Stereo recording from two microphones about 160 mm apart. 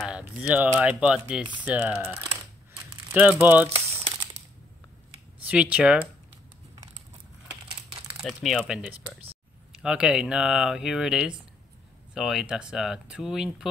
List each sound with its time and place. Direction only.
0.0 s speech: 5° right (ahead or behind)
3.7 s crumpling: 35° right (ahead or behind)
5.5 s speech: 5° right (ahead or behind)
8.2 s speech: centre (ahead or behind)